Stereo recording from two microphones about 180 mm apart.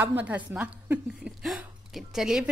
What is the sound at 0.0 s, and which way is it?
A woman's voice, 10° right (ahead or behind).